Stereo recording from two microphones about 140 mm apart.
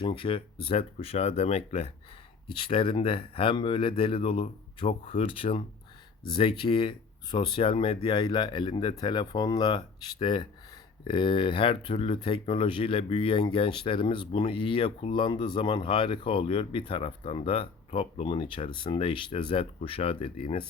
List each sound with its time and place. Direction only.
0.0 s speech: 40° left (ahead or behind)